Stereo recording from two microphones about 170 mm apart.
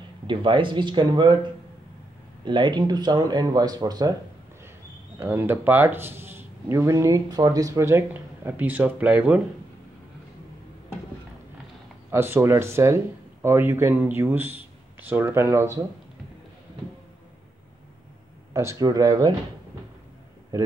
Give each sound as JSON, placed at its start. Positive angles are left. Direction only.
{"t": 0.3, "sound": "speech", "side_deg": -30}
{"t": 5.2, "sound": "speech", "side_deg": -10}
{"t": 12.1, "sound": "speech", "side_deg": -15}
{"t": 18.5, "sound": "speech", "side_deg": -15}
{"t": 20.5, "sound": "speech", "side_deg": -15}